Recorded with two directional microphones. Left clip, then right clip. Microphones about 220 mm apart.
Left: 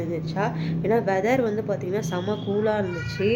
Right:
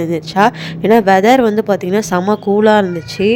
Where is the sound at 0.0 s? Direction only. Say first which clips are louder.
Right 14 dB; 45° right (ahead or behind).